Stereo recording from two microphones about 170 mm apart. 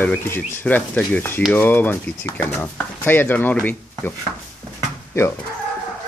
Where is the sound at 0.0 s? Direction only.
15° left (ahead or behind).